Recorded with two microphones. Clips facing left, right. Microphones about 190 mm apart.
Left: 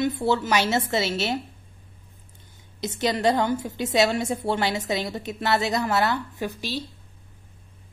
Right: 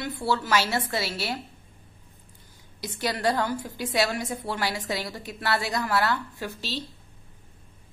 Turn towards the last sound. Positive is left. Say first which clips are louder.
# left 4 dB
turn(degrees=15)  # may be behind; listen again after turning